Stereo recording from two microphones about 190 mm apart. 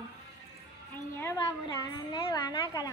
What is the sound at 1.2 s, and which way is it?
A woman's voice, 20° left (ahead or behind).